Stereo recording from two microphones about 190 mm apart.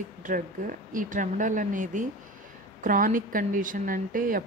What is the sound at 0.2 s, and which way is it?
Speech, 45° right (ahead or behind).